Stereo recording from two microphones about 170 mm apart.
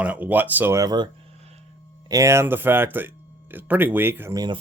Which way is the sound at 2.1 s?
15° right (ahead or behind).